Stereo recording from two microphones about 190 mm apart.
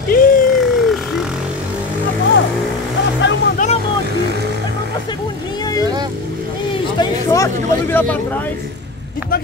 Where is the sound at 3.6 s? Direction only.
40° left (ahead or behind).